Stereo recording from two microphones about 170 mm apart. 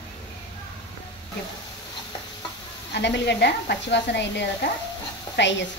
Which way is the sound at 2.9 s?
90° left.